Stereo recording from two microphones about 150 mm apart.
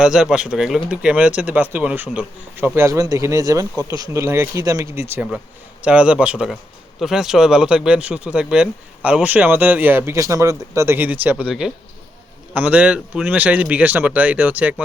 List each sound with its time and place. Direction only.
0.0 s speech: 5° right (ahead or behind)